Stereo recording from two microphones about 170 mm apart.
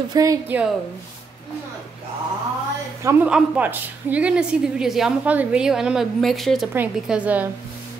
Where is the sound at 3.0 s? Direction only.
10° right (ahead or behind).